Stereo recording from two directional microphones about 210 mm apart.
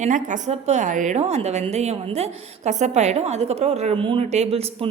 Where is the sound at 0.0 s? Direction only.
35° right (ahead or behind).